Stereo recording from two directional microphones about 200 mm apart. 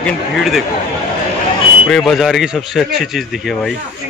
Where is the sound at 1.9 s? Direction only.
5° left (ahead or behind).